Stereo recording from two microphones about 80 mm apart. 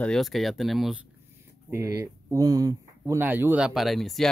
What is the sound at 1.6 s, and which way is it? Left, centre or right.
Speech, right.